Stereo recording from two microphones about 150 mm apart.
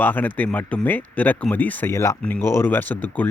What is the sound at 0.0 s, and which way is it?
Speech, 10° left (ahead or behind).